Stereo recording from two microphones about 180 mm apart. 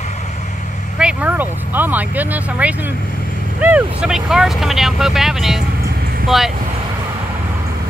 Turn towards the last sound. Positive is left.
turn(degrees=0)  # may be behind; listen again after turning